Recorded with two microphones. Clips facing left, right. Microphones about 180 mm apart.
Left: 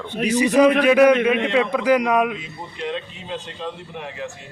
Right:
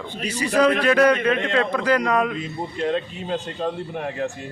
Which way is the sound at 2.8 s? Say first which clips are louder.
Right 4 dB; 45° right (ahead or behind).